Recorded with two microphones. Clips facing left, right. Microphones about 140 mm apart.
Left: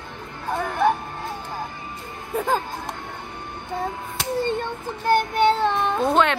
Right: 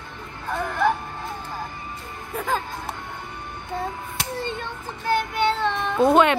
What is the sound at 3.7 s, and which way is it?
Hands, centre (ahead or behind).